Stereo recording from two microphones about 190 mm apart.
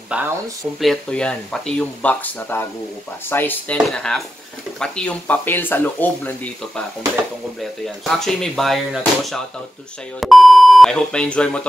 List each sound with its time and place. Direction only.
0.1 s speech: 5° right (ahead or behind); by 6.5 s 10° left (ahead or behind)
7.8 s speech: centre (ahead or behind)